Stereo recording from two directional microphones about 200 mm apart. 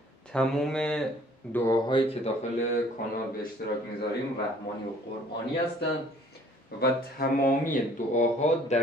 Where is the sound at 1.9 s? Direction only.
25° left (ahead or behind).